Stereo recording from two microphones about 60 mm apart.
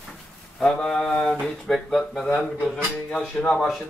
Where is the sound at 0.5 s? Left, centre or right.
Centre.